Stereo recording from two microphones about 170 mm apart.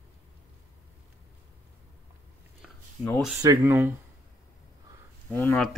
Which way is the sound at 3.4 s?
15° right (ahead or behind).